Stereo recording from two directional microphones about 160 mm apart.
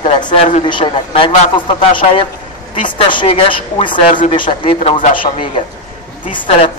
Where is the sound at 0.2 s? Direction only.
30° left (ahead or behind).